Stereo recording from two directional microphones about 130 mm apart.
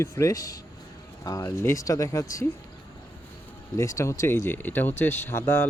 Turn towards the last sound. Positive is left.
turn(degrees=20)  # may be behind; listen again after turning